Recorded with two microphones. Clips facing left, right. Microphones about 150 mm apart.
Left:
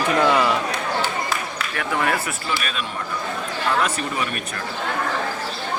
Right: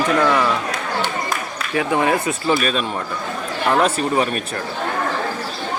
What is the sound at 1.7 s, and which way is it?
Speech, 20° right (ahead or behind).